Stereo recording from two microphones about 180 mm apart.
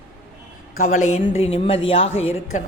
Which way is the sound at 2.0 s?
90° left.